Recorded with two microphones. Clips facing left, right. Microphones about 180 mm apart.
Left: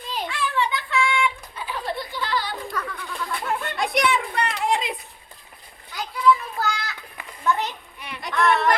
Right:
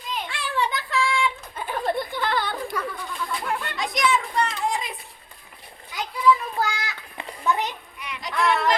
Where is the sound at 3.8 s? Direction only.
60° left (ahead or behind).